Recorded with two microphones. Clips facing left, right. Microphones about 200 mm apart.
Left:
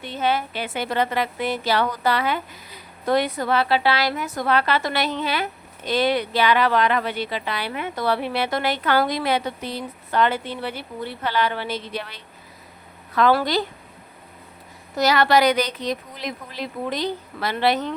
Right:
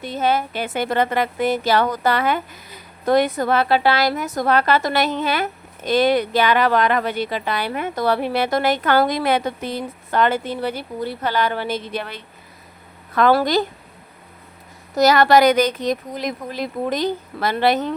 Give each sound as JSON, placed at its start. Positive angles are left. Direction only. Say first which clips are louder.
{"t": 0.0, "sound": "a woman's voice", "louder": "right 3 dB", "side_deg": -40}
{"t": 14.9, "sound": "a woman's voice", "louder": "right 4 dB", "side_deg": -45}